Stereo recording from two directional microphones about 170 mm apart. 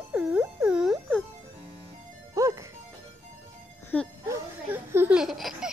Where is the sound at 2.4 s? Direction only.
20° right (ahead or behind).